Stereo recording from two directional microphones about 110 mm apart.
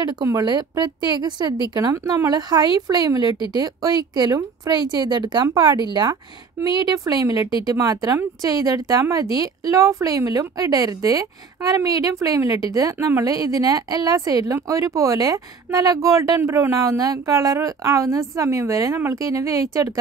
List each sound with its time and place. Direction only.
0.1 s a woman's voice: 35° right (ahead or behind)